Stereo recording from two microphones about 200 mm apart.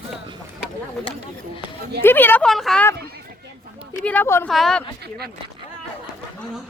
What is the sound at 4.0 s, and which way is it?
Speech, 10° left (ahead or behind).